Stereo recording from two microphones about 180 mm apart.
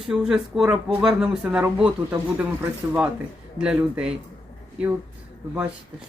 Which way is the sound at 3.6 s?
5° right (ahead or behind).